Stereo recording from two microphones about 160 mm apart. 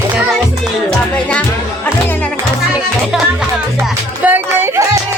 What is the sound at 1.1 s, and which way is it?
Music, 10° left (ahead or behind).